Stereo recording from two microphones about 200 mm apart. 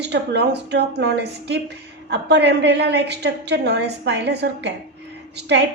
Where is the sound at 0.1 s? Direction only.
55° right (ahead or behind).